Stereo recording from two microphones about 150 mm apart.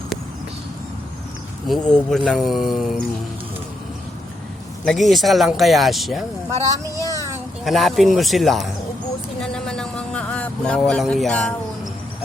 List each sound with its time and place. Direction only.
1.6 s speech: centre (ahead or behind)
4.9 s speech: centre (ahead or behind)
6.5 s speech: 20° right (ahead or behind)
7.6 s speech: centre (ahead or behind)
9.4 s vehicle: 5° left (ahead or behind)